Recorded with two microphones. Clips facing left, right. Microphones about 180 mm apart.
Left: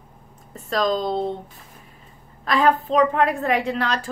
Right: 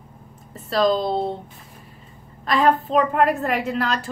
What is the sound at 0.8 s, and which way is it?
Speech, 35° right (ahead or behind).